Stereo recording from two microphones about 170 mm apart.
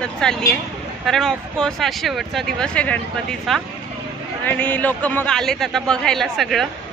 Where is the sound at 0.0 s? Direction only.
5° left (ahead or behind).